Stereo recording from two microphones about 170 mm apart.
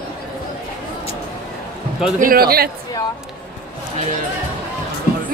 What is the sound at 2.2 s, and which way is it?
Speech, 60° right (ahead or behind).